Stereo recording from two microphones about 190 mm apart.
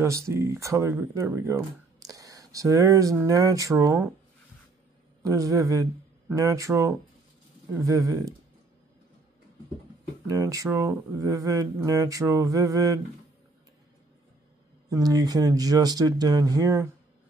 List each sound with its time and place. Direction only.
0.0 s speech: 15° right (ahead or behind)
5.2 s speech: 15° right (ahead or behind)
10.2 s speech: 15° right (ahead or behind)
14.9 s speech: 20° right (ahead or behind)